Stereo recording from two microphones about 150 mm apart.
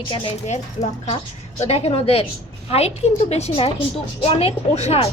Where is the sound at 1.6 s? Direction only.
45° left (ahead or behind).